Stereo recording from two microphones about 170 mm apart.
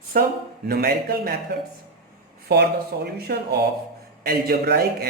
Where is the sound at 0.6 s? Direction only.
65° right (ahead or behind).